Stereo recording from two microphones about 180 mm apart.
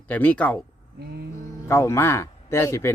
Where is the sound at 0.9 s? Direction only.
60° right (ahead or behind).